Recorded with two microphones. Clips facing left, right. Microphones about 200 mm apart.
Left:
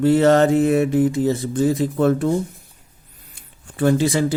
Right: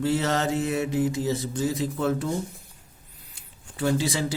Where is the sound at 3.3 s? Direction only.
55° left (ahead or behind).